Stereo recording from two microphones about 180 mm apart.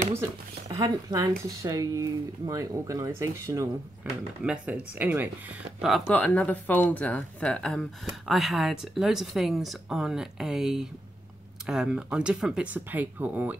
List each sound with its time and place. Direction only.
0.7 s speech: 20° right (ahead or behind)
5.8 s speech: centre (ahead or behind)